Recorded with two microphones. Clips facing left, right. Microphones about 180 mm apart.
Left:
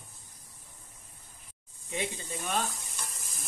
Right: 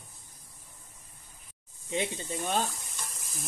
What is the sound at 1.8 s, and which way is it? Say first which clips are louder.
Speech: right 3 dB; 25° right (ahead or behind).